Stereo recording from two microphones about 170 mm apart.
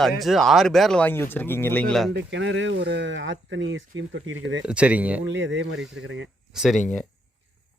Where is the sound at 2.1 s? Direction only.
90° right.